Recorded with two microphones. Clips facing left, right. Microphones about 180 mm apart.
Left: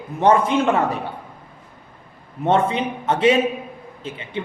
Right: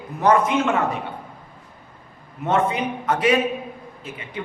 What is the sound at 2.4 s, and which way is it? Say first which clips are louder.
A man's voice: left 2 dB; 30° left (ahead or behind).